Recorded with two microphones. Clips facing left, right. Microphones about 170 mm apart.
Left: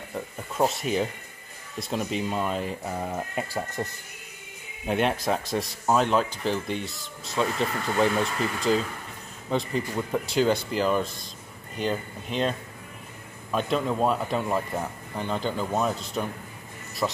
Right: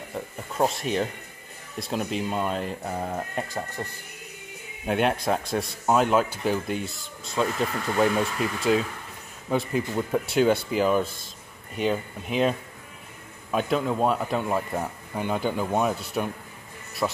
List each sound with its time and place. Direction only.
0.6 s speech: centre (ahead or behind)
3.5 s speech: 15° left (ahead or behind)
4.8 s speech: centre (ahead or behind)